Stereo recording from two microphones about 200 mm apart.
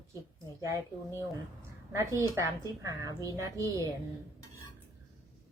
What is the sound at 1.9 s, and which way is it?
A woman's voice, 15° right (ahead or behind).